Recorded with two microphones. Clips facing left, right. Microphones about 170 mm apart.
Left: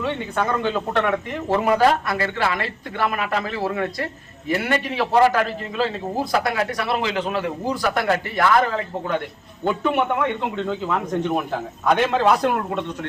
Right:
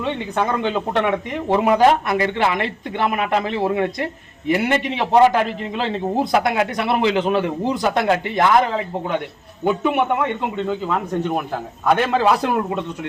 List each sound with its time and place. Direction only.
0.0 s a man's voice: 20° right (ahead or behind)